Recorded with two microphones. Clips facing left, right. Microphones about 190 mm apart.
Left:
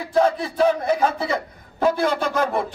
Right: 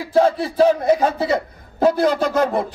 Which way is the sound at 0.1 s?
30° right (ahead or behind).